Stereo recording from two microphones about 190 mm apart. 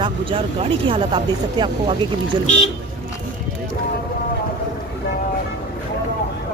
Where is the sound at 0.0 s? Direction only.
25° right (ahead or behind).